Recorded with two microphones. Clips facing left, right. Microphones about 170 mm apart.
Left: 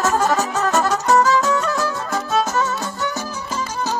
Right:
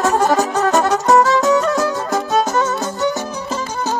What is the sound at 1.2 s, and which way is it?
Music, 20° right (ahead or behind).